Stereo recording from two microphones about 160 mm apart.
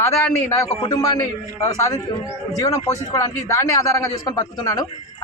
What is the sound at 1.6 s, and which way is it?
Speech, 20° left (ahead or behind).